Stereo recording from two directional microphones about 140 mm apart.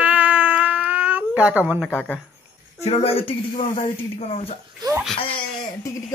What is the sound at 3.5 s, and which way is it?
Speech, 70° left (ahead or behind).